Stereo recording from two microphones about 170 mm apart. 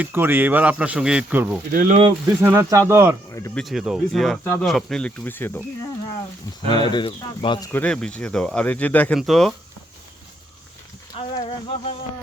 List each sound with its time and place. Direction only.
0.0 s speech: 10° right (ahead or behind)
1.7 s speech: 50° right (ahead or behind)
2.2 s speech: 10° right (ahead or behind)
3.3 s insect: 15° left (ahead or behind)
3.6 s speech: centre (ahead or behind)
6.7 s speech: 25° left (ahead or behind)
7.7 s speech: 10° left (ahead or behind)
11.3 s a sound: 35° left (ahead or behind)